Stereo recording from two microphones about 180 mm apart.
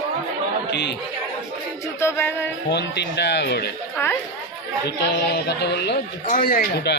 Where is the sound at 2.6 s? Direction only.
70° left (ahead or behind).